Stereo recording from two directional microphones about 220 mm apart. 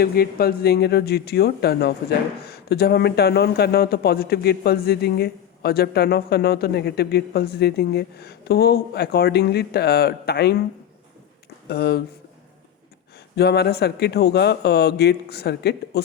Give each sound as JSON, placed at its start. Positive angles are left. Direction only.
{"t": 0.0, "sound": "speech", "side_deg": 45}
{"t": 11.7, "sound": "speech", "side_deg": 45}
{"t": 13.3, "sound": "speech", "side_deg": 50}